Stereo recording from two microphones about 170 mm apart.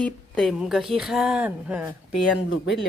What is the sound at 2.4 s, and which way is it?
Speech, 90° left.